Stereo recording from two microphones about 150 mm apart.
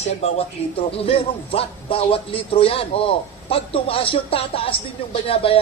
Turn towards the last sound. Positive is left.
turn(degrees=40)  # may be behind; listen again after turning